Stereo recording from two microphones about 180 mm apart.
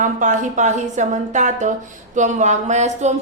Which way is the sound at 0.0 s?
45° right (ahead or behind).